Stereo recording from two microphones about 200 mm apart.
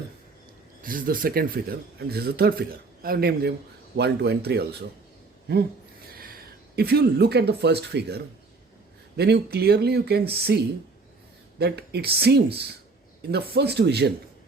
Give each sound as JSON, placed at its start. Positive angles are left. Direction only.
{"t": 0.8, "sound": "speech", "side_deg": -45}
{"t": 6.1, "sound": "speech", "side_deg": -45}
{"t": 11.6, "sound": "speech", "side_deg": -55}